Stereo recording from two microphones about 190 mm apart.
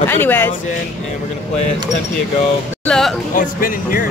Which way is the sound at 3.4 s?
45° left (ahead or behind).